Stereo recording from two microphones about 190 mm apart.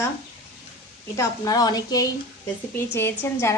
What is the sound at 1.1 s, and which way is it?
A woman's voice, 20° left (ahead or behind).